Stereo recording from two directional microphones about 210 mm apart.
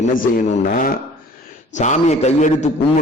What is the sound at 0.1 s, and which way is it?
A man's voice, 40° left (ahead or behind).